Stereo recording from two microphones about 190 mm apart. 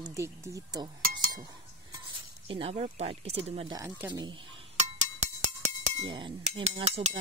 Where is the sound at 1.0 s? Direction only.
50° right (ahead or behind).